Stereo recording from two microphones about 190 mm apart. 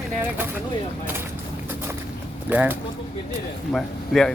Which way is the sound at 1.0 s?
10° right (ahead or behind).